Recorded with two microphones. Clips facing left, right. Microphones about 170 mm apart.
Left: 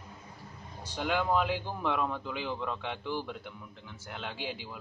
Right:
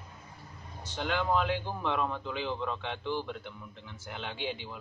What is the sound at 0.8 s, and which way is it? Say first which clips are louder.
A man's voice: left 1 dB; 10° left (ahead or behind).